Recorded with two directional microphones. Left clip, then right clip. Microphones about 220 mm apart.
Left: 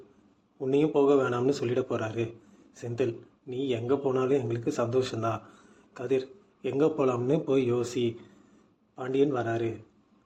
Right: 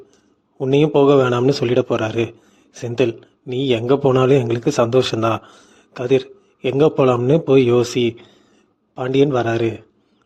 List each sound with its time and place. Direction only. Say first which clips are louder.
0.6 s a man's voice: right 10 dB; 45° right (ahead or behind)